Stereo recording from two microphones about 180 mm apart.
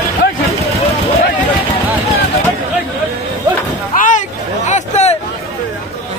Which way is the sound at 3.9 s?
45° left (ahead or behind).